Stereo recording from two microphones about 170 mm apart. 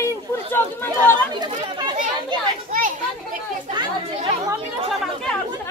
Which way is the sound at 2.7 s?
55° right (ahead or behind).